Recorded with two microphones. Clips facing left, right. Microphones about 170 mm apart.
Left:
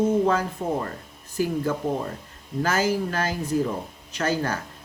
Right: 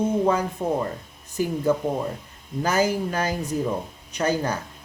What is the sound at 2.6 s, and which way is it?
Speech, 15° right (ahead or behind).